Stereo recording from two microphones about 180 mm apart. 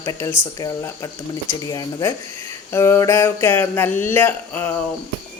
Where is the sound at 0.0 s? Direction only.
15° left (ahead or behind).